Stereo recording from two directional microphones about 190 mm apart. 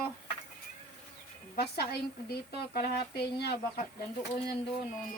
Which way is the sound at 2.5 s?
55° left (ahead or behind).